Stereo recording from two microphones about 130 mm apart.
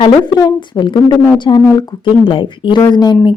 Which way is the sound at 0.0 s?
35° left (ahead or behind).